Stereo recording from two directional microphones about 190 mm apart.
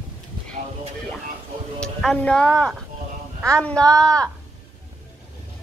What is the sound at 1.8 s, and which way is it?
Speech, 5° left (ahead or behind).